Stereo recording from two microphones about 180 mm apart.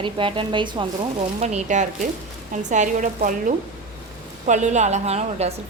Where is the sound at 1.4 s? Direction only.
40° right (ahead or behind).